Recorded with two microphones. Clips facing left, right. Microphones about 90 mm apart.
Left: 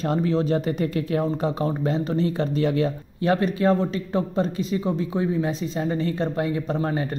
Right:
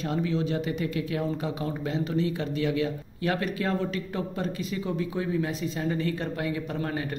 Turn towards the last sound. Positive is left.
turn(degrees=30)  # may be behind; listen again after turning